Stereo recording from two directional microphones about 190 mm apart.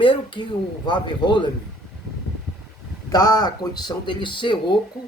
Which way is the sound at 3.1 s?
20° left (ahead or behind).